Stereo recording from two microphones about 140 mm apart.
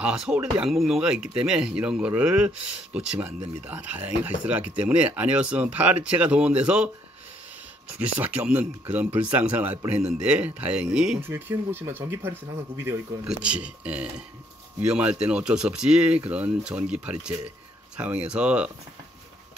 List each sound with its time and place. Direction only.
0.0 s speech: 5° right (ahead or behind)
8.0 s speech: 10° right (ahead or behind)